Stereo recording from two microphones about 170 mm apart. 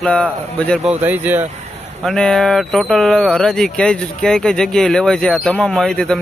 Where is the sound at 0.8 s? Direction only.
10° right (ahead or behind).